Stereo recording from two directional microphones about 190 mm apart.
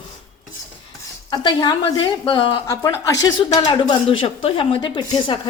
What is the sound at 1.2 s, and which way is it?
Speech, 25° left (ahead or behind).